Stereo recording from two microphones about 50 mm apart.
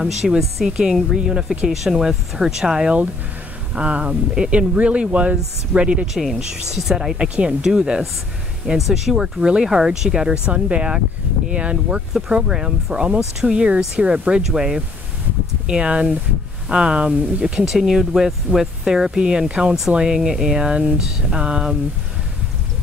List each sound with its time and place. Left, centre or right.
0.2 s speech: centre
0.7 s speech: centre
3.7 s speech: right
6.1 s speech: centre
7.2 s speech: right
12.5 s speech: centre
17.6 s speech: centre